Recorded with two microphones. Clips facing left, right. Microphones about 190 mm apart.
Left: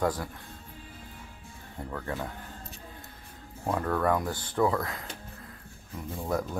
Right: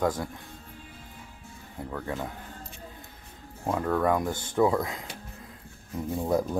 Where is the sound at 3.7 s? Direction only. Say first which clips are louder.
Right 2 dB; 5° right (ahead or behind).